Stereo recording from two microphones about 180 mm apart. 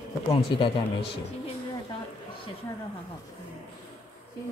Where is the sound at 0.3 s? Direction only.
30° left (ahead or behind).